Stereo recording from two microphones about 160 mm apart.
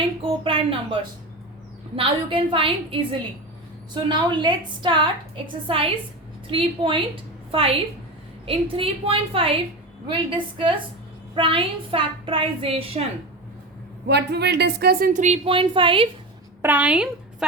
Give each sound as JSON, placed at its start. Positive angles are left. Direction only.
{"t": 0.2, "sound": "a woman's voice", "side_deg": -35}
{"t": 2.0, "sound": "a woman's voice", "side_deg": -35}
{"t": 8.4, "sound": "a woman's voice", "side_deg": -35}
{"t": 14.1, "sound": "a woman's voice", "side_deg": -90}
{"t": 16.6, "sound": "a woman's voice", "side_deg": -10}